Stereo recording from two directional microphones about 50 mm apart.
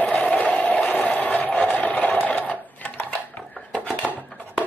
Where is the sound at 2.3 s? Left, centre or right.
Left.